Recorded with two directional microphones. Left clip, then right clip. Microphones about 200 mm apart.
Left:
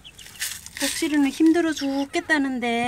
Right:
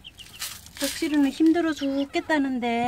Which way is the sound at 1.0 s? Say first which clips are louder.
Left 2 dB; centre (ahead or behind).